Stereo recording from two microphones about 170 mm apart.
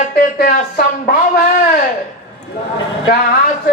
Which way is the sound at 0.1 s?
65° left (ahead or behind).